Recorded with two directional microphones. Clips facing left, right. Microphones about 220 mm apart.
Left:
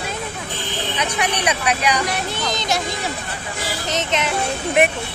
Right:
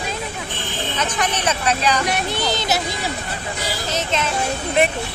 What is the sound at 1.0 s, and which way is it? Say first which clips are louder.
Speech: even; 10° left (ahead or behind).